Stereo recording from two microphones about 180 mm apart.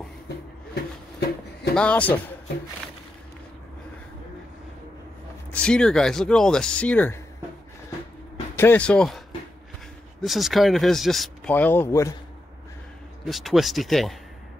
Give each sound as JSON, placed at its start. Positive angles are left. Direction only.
{"t": 1.8, "sound": "speech", "side_deg": 5}
{"t": 5.5, "sound": "speech", "side_deg": 5}
{"t": 8.5, "sound": "speech", "side_deg": 10}
{"t": 10.2, "sound": "speech", "side_deg": 0}
{"t": 13.2, "sound": "speech", "side_deg": 0}